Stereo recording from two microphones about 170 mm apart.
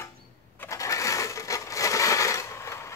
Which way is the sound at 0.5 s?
15° left (ahead or behind).